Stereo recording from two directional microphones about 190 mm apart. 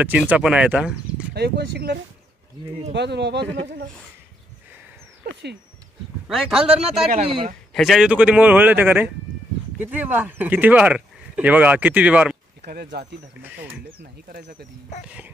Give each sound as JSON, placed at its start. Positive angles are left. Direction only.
{"t": 0.3, "sound": "a man's voice", "side_deg": -5}
{"t": 1.3, "sound": "speech", "side_deg": -60}
{"t": 5.2, "sound": "speech", "side_deg": -60}
{"t": 6.2, "sound": "a man's voice", "side_deg": -5}
{"t": 7.2, "sound": "speech", "side_deg": -30}
{"t": 7.7, "sound": "speech", "side_deg": 0}
{"t": 12.6, "sound": "speech", "side_deg": -55}
{"t": 15.0, "sound": "speech", "side_deg": -5}